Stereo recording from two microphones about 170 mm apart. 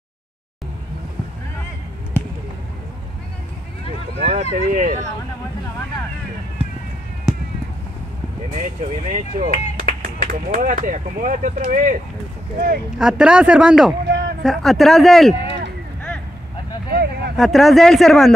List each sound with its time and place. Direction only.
4.3 s speech: 45° right (ahead or behind)
8.5 s speech: 40° right (ahead or behind)
13.0 s speech: 5° right (ahead or behind)
14.0 s a man's voice: 70° right (ahead or behind)
14.4 s speech: centre (ahead or behind)
16.9 s a sound: 65° right (ahead or behind)
17.4 s speech: centre (ahead or behind)